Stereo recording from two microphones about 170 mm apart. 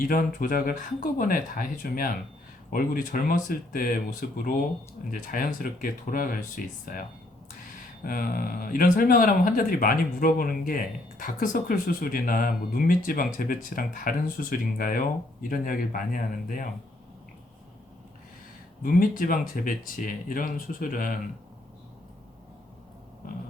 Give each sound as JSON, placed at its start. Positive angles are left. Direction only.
{"t": 0.0, "sound": "speech", "side_deg": 55}
{"t": 8.0, "sound": "speech", "side_deg": 60}
{"t": 18.8, "sound": "speech", "side_deg": 55}
{"t": 23.2, "sound": "speech", "side_deg": 55}